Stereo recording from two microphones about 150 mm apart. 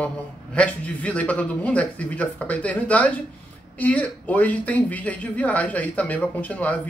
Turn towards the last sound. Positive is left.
turn(degrees=10)  # may be behind; listen again after turning